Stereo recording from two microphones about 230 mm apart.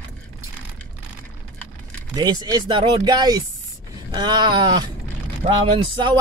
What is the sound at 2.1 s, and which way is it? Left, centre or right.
Speech, centre.